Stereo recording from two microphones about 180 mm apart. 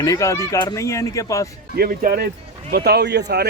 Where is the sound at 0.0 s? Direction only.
20° left (ahead or behind).